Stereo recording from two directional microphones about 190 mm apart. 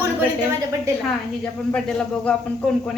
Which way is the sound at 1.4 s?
5° left (ahead or behind).